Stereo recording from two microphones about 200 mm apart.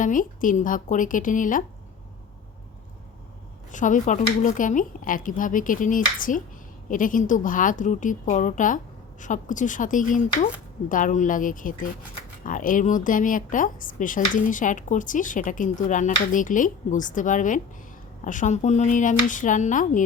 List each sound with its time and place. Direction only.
0.0 s speech: 40° left (ahead or behind)
3.7 s speech: 40° left (ahead or behind)